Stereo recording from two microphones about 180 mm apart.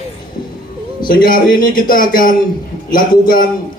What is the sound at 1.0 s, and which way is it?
A man's voice, 55° left (ahead or behind).